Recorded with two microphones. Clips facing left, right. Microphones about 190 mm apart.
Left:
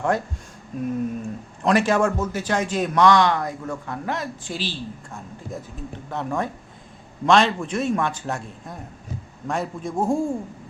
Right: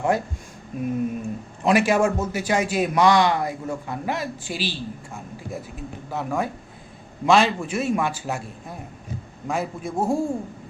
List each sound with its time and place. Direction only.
0.8 s speech: 5° right (ahead or behind)